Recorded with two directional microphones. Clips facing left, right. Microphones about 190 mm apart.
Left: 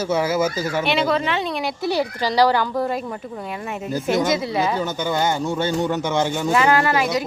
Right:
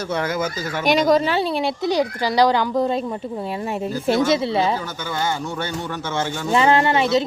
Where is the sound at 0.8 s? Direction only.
40° right (ahead or behind).